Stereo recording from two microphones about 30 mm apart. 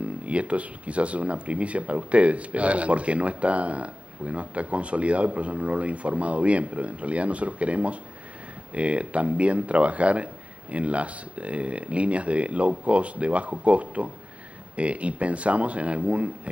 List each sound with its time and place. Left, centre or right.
0.0 s speech: right